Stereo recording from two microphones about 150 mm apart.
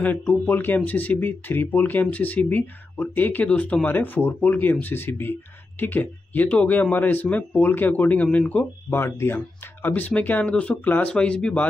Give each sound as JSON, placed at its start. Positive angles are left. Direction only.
{"t": 0.0, "sound": "speech", "side_deg": 10}